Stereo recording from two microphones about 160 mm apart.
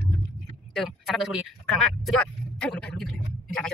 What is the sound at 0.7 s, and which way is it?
Speech, centre (ahead or behind).